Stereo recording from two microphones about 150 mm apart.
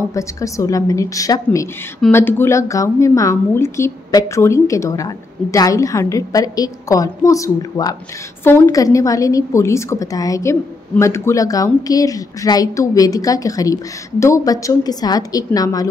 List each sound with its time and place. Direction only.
0.1 s a woman's voice: 20° left (ahead or behind)